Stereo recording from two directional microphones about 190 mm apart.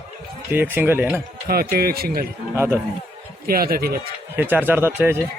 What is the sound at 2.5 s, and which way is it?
Speech, 15° right (ahead or behind).